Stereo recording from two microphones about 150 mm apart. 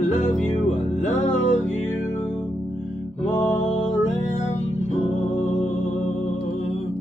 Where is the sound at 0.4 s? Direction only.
55° left (ahead or behind).